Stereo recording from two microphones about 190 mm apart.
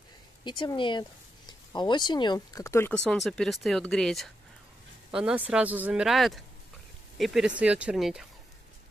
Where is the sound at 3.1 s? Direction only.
5° left (ahead or behind).